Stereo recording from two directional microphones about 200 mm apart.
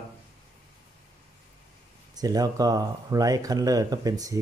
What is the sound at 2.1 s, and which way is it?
Speech, 20° right (ahead or behind).